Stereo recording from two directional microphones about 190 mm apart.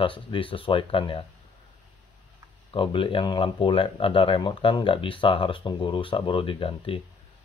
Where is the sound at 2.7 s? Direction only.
25° left (ahead or behind).